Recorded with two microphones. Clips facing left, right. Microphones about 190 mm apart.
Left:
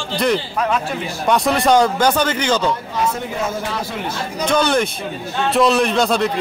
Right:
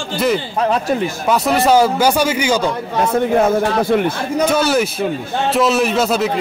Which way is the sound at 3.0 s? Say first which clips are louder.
Right 10 dB; 55° right (ahead or behind).